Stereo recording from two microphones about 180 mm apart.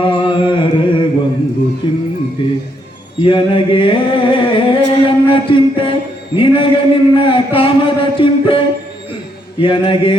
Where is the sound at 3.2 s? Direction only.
30° left (ahead or behind).